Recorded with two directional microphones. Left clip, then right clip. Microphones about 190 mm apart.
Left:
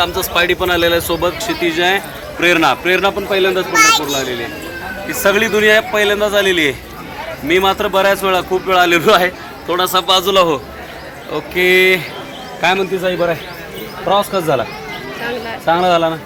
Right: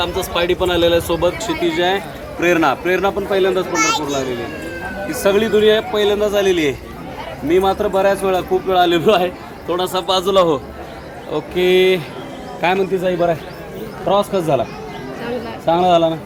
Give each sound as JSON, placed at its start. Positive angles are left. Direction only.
{"t": 0.0, "sound": "a man's voice", "side_deg": 10}
{"t": 5.2, "sound": "a man's voice", "side_deg": 15}
{"t": 12.6, "sound": "a man's voice", "side_deg": 15}
{"t": 15.6, "sound": "a man's voice", "side_deg": 20}